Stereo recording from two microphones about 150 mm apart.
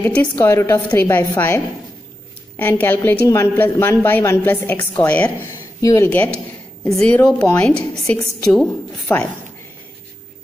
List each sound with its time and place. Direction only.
0.0 s a woman's voice: 10° left (ahead or behind)
2.8 s a woman's voice: 15° left (ahead or behind)
5.8 s speech: 20° left (ahead or behind)
6.2 s a woman's voice: 5° left (ahead or behind)